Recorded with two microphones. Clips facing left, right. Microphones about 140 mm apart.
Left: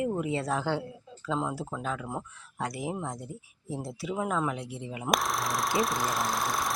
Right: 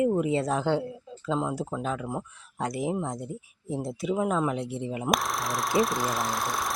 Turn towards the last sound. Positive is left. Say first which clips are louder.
# even
turn(degrees=0)  # may be behind; listen again after turning